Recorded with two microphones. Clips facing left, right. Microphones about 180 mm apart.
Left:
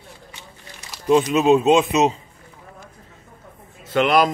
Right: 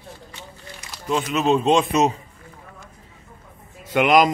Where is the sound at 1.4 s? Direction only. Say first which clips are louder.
Left 3 dB; 5° left (ahead or behind).